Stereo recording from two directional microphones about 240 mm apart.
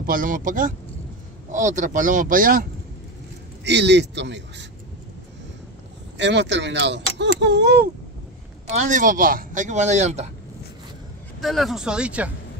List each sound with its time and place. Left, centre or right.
0.0 s speech: right
3.6 s speech: right
6.1 s speech: right
8.6 s speech: right
11.4 s speech: centre